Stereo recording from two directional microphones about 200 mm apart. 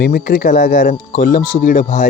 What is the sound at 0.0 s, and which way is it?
Speech, 50° left (ahead or behind).